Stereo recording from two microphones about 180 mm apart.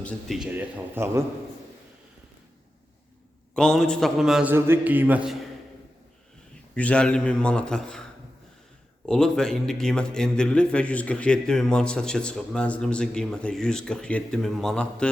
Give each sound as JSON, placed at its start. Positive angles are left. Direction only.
{"t": 0.0, "sound": "a man's voice", "side_deg": 5}
{"t": 3.5, "sound": "a man's voice", "side_deg": 5}
{"t": 4.5, "sound": "a man's voice", "side_deg": -15}
{"t": 6.7, "sound": "a man's voice", "side_deg": 5}
{"t": 9.0, "sound": "a man's voice", "side_deg": 5}